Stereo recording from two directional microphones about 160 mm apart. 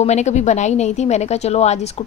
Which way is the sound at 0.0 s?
45° left (ahead or behind).